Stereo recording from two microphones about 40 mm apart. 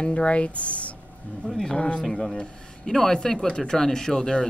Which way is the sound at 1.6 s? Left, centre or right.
Left.